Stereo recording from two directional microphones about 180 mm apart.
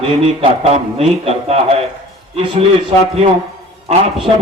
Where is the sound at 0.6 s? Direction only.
35° right (ahead or behind).